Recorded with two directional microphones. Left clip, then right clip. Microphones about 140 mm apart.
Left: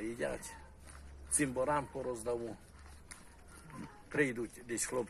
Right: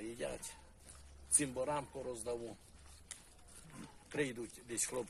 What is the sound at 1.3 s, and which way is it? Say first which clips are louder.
Speech: left 4 dB; 35° right (ahead or behind).